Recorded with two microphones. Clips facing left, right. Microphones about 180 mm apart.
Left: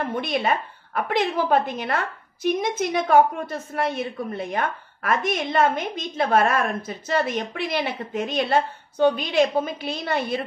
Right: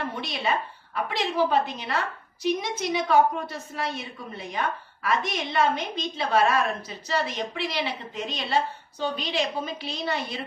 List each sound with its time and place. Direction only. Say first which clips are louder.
0.1 s a woman's voice: left 5 dB; 55° left (ahead or behind)